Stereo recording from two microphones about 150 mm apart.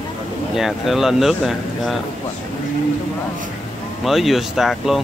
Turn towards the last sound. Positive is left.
turn(degrees=0)  # may be behind; listen again after turning